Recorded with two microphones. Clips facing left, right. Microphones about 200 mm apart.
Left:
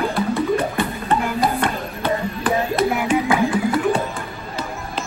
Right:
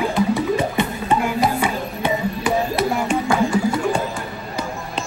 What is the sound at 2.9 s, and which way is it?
Music, 5° left (ahead or behind).